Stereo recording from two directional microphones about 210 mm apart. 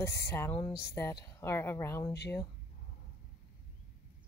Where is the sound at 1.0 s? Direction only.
10° left (ahead or behind).